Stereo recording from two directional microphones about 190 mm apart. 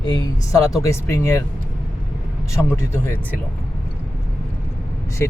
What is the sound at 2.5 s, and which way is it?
Speech, 15° left (ahead or behind).